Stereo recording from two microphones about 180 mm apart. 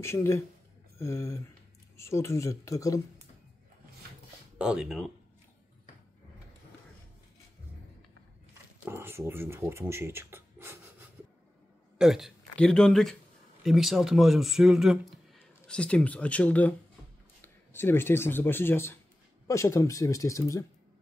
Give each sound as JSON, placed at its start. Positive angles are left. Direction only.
{"t": 0.0, "sound": "speech", "side_deg": 15}
{"t": 4.6, "sound": "speech", "side_deg": -5}
{"t": 8.8, "sound": "speech", "side_deg": -15}
{"t": 12.0, "sound": "speech", "side_deg": 0}